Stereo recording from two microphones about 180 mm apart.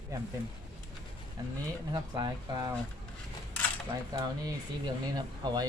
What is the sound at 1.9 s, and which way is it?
Speech, 20° right (ahead or behind).